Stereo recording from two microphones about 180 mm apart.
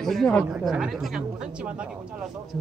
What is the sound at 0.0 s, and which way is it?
Speech, centre (ahead or behind).